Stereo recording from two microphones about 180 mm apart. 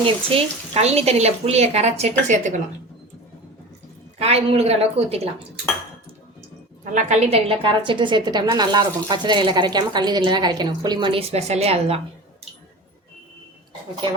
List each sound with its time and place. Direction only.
0.0 s speech: 30° right (ahead or behind)
4.2 s speech: 35° right (ahead or behind)
6.9 s speech: 40° right (ahead or behind)